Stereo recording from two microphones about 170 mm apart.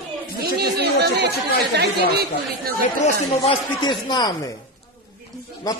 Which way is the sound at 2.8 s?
40° left (ahead or behind).